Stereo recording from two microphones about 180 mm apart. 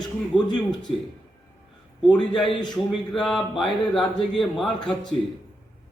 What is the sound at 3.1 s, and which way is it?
Speech, centre (ahead or behind).